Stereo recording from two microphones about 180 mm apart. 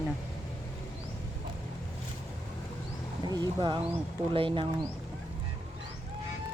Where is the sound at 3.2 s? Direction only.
20° right (ahead or behind).